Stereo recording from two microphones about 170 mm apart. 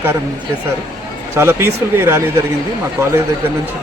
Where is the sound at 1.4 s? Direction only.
15° right (ahead or behind).